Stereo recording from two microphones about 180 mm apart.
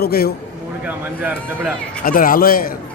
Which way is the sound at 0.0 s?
60° left (ahead or behind).